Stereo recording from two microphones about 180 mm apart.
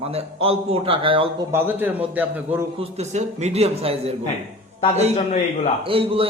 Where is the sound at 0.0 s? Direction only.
35° right (ahead or behind).